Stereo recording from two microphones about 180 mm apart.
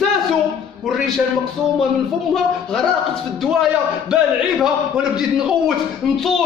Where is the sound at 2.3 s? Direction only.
Centre (ahead or behind).